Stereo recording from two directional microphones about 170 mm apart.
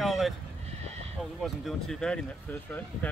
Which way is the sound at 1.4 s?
5° left (ahead or behind).